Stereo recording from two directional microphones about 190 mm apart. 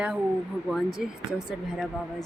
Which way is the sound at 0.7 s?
Centre (ahead or behind).